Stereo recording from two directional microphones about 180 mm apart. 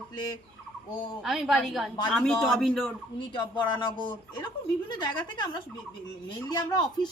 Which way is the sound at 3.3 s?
25° left (ahead or behind).